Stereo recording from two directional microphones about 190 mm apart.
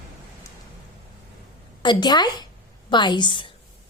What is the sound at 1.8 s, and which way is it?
A woman's voice, 25° left (ahead or behind).